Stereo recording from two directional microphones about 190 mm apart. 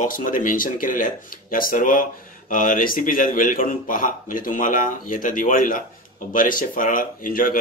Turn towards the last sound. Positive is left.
turn(degrees=50)  # may be behind; listen again after turning